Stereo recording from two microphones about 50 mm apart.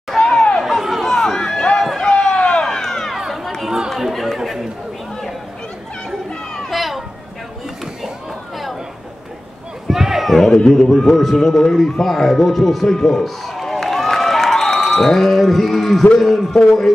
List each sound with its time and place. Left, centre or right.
0.3 s chatter: centre
0.7 s a sound: centre
1.0 s run: centre
2.6 s run: centre
3.6 s chatter: centre
3.9 s chatter: centre
6.0 s children playing: centre
9.8 s a man's voice: centre
14.5 s a sound: centre
16.5 s a man's voice: centre